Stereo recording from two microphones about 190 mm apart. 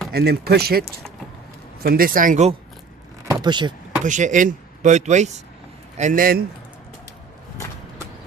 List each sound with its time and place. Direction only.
0.1 s speech: 55° right (ahead or behind); by 2.6 s 40° right (ahead or behind)
3.2 s speech: 25° right (ahead or behind)
4.0 s speech: 40° right (ahead or behind)